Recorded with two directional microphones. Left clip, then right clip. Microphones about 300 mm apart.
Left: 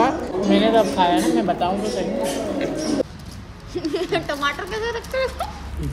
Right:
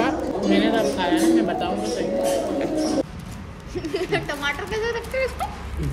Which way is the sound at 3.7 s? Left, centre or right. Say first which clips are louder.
Left 2 dB; left.